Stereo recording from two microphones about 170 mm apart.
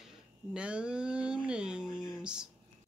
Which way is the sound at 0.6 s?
5° right (ahead or behind).